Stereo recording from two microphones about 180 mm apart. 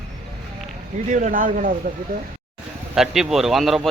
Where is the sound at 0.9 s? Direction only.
45° right (ahead or behind).